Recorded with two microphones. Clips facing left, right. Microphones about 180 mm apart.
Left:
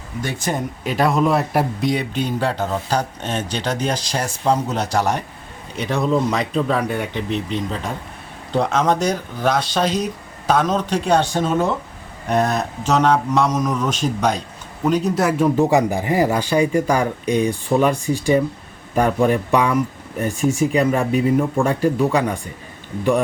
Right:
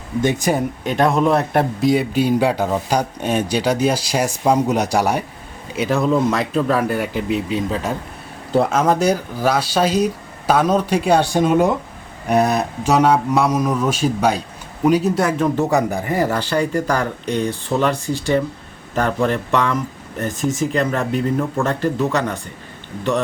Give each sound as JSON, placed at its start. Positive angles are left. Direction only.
{"t": 0.2, "sound": "speech", "side_deg": -20}
{"t": 0.5, "sound": "speech", "side_deg": 0}